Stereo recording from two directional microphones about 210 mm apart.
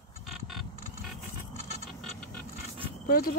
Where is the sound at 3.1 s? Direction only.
45° left (ahead or behind).